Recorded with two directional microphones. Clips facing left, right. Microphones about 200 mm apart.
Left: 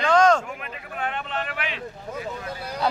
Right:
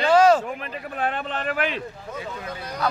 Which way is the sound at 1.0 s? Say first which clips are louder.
Right 2 dB; 35° right (ahead or behind).